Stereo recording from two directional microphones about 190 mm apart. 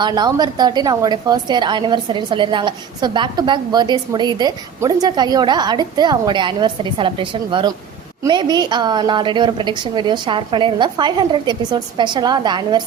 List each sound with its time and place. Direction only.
0.0 s a woman's voice: 20° right (ahead or behind)